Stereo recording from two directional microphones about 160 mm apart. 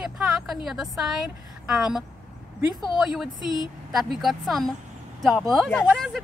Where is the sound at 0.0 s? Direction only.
5° right (ahead or behind).